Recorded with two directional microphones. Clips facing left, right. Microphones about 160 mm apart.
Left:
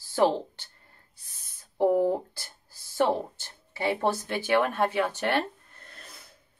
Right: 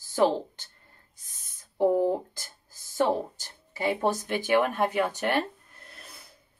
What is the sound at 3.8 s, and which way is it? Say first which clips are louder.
Speech: even; 15° right (ahead or behind).